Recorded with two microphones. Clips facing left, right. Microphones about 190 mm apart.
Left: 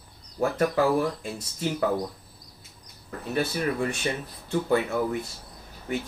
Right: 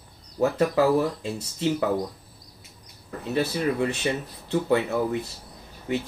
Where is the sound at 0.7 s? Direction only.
25° right (ahead or behind).